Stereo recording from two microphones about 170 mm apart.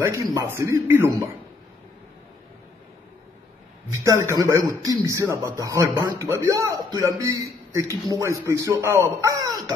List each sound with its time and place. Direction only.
0.0 s speech: 20° right (ahead or behind)
4.0 s a man's voice: 15° right (ahead or behind)